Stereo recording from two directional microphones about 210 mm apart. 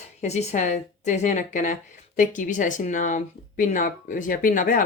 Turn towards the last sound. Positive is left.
turn(degrees=40)  # may be behind; listen again after turning